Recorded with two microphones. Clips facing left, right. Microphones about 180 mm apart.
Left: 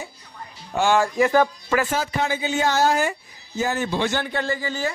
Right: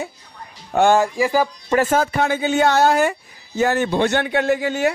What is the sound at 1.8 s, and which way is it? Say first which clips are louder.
Speech: right 7 dB; 50° right (ahead or behind).